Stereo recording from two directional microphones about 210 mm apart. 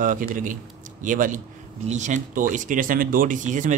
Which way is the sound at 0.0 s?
40° right (ahead or behind).